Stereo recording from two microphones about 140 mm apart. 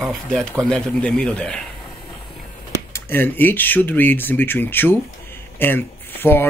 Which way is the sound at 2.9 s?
15° left (ahead or behind).